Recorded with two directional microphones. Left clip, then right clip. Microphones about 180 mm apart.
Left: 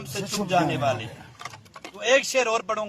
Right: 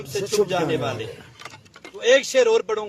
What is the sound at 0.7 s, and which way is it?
A man's voice, 20° right (ahead or behind).